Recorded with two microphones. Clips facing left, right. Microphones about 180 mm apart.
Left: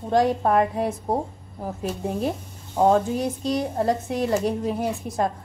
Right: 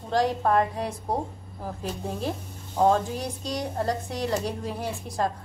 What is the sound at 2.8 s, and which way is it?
A woman's voice, 20° left (ahead or behind).